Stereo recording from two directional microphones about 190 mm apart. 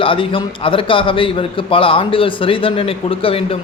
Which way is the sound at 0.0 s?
25° left (ahead or behind).